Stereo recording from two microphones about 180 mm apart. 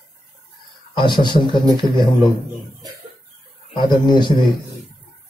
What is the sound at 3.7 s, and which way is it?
Speech, 25° left (ahead or behind).